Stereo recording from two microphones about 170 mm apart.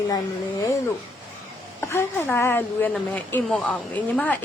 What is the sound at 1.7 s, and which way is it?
A woman's voice, 15° left (ahead or behind).